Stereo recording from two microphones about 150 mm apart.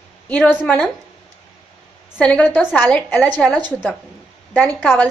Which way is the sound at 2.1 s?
10° left (ahead or behind).